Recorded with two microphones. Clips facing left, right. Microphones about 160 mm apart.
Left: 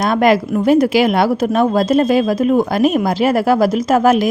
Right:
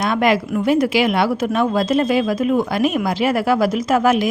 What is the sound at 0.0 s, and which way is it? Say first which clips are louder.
Speech: left 4 dB; 45° left (ahead or behind).